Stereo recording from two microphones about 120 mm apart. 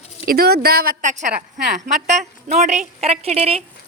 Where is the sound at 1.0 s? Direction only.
90° right.